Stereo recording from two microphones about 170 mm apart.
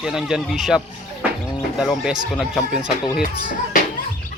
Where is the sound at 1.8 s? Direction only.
5° right (ahead or behind).